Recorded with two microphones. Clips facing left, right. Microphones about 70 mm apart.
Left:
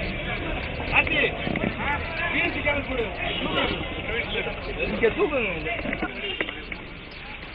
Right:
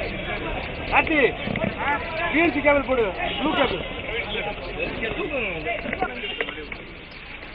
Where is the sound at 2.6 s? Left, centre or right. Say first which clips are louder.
Right 8 dB; right.